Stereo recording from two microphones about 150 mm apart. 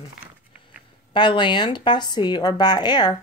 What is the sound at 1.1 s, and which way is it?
A woman's voice, 35° left (ahead or behind).